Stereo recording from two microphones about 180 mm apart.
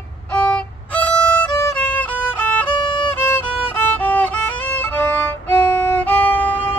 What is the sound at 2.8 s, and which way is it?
Violin, 25° left (ahead or behind).